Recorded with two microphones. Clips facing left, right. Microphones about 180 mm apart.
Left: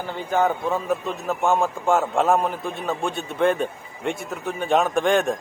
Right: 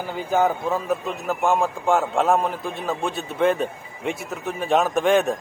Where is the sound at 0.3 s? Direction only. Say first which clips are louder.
Right 1 dB; 5° right (ahead or behind).